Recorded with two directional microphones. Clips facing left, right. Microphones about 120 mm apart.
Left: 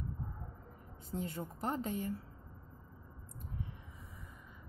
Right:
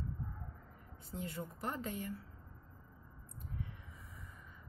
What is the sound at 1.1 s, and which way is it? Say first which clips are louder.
Speech: left 3 dB; 35° left (ahead or behind).